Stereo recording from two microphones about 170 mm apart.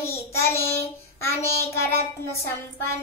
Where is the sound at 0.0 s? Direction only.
15° left (ahead or behind).